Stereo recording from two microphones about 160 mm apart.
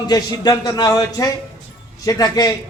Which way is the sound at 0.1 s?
25° left (ahead or behind).